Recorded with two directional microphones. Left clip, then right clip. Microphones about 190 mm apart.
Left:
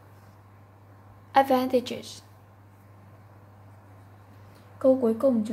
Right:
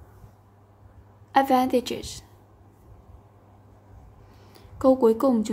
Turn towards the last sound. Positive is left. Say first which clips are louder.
# right 2 dB
turn(degrees=-55)  # may be behind; listen again after turning